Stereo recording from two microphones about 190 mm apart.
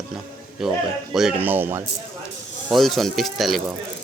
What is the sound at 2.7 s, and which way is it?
Speech, centre (ahead or behind).